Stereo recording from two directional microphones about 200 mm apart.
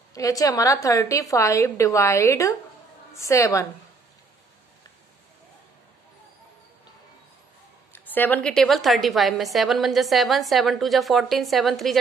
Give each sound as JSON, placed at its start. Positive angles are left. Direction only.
{"t": 0.1, "sound": "a woman's voice", "side_deg": 15}
{"t": 7.9, "sound": "a woman's voice", "side_deg": 10}